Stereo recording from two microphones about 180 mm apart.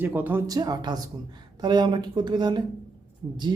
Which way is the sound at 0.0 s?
10° right (ahead or behind).